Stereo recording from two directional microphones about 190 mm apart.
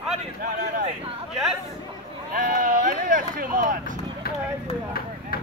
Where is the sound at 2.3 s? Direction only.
45° right (ahead or behind).